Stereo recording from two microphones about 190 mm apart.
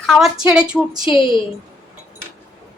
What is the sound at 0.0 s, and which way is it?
A woman's voice, centre (ahead or behind).